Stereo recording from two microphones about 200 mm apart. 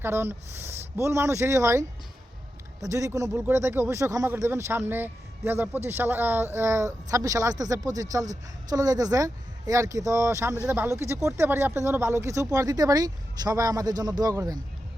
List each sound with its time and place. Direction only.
0.0 s a woman's voice: 10° right (ahead or behind)
2.8 s a woman's voice: 15° right (ahead or behind)